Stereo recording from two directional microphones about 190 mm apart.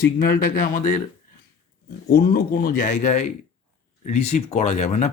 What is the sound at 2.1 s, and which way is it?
A man's voice, 55° left (ahead or behind).